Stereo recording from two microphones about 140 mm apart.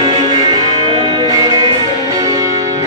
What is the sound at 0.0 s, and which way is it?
Music, 30° right (ahead or behind).